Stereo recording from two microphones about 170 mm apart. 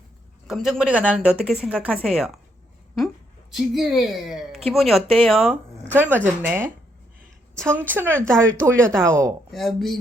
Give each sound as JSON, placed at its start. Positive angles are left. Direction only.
{"t": 0.4, "sound": "speech", "side_deg": 0}
{"t": 5.9, "sound": "speech", "side_deg": -10}
{"t": 7.5, "sound": "a woman's voice", "side_deg": 5}
{"t": 7.8, "sound": "speech", "side_deg": -10}
{"t": 8.9, "sound": "speech", "side_deg": 5}